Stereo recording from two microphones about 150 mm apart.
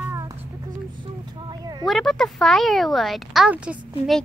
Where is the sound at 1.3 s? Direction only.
30° right (ahead or behind).